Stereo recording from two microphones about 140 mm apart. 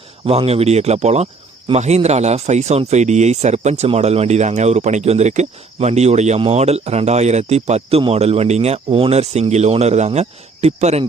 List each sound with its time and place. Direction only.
0.3 s speech: 45° right (ahead or behind)